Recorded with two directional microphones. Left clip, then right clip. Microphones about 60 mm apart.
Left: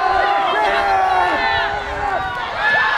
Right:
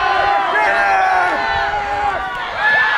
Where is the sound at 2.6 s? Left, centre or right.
Right.